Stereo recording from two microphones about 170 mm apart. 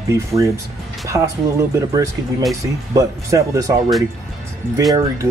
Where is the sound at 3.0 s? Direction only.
20° right (ahead or behind).